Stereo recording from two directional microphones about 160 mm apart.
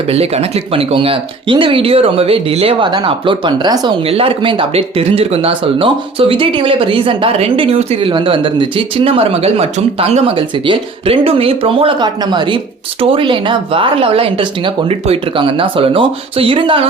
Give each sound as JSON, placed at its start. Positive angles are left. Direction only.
{"t": 0.1, "sound": "speech", "side_deg": -40}